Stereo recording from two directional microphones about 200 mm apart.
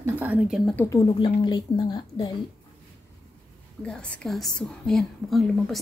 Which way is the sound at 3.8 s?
5° left (ahead or behind).